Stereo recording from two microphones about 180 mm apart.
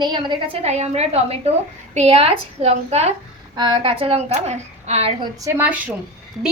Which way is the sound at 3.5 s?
25° right (ahead or behind).